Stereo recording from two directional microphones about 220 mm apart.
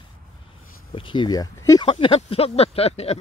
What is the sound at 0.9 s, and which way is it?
Speech, 20° left (ahead or behind).